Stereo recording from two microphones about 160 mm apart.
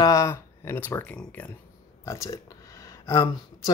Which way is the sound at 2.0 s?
20° left (ahead or behind).